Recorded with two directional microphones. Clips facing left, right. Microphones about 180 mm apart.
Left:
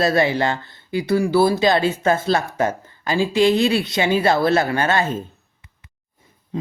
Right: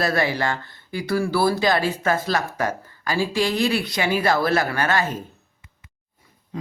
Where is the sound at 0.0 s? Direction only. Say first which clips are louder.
Left 4 dB; 20° left (ahead or behind).